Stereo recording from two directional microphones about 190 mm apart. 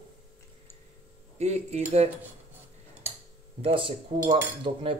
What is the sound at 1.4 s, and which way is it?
Speech, 35° right (ahead or behind).